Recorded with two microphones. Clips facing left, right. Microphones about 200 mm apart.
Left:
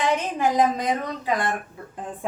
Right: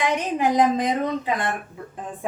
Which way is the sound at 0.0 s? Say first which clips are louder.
Right 1 dB; 15° right (ahead or behind).